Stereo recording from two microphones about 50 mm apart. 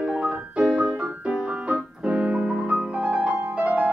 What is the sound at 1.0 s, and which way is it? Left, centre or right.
Piano, right.